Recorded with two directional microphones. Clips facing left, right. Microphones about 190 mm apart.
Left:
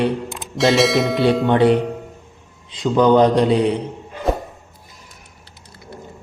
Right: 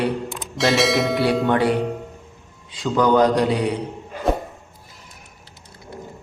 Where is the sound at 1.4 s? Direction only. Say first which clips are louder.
Left 4 dB; 20° left (ahead or behind).